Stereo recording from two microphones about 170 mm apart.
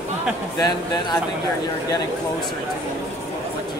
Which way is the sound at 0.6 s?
25° left (ahead or behind).